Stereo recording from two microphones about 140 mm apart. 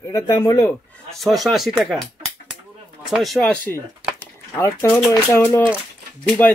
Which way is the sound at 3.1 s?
Centre (ahead or behind).